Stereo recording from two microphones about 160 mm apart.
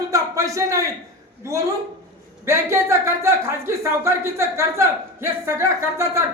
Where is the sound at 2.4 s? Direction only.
15° right (ahead or behind).